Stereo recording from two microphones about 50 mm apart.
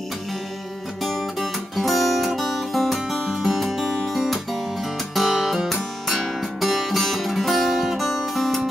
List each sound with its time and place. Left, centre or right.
1.0 s music: centre